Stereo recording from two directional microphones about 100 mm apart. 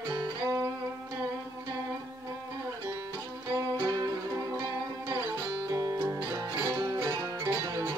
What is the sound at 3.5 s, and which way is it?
Music, 35° right (ahead or behind).